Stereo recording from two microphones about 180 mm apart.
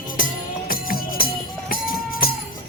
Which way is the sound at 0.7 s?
55° left (ahead or behind).